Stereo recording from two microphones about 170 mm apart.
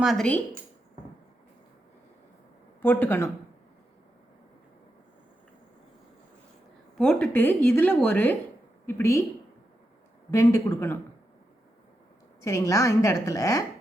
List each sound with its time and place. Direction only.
0.0 s speech: centre (ahead or behind)
2.8 s a woman's voice: 10° left (ahead or behind)
6.9 s a woman's voice: 5° left (ahead or behind)
10.3 s a woman's voice: 15° left (ahead or behind)
12.4 s a woman's voice: 20° left (ahead or behind)